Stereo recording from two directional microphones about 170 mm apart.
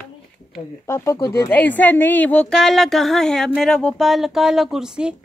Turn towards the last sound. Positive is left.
turn(degrees=-5)  # may be behind; listen again after turning